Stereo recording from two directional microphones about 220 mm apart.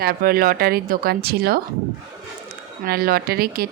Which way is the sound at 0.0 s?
45° right (ahead or behind).